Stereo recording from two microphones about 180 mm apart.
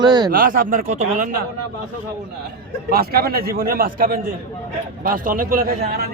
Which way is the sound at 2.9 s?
55° right (ahead or behind).